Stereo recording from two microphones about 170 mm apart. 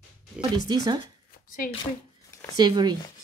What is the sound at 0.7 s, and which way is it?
Speech, 25° right (ahead or behind).